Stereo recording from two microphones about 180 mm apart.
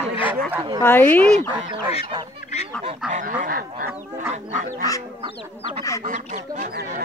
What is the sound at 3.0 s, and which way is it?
Goose, 45° right (ahead or behind).